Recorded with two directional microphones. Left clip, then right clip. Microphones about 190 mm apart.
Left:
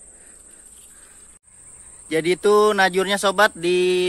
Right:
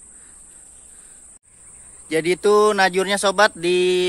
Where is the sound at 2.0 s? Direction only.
Centre (ahead or behind).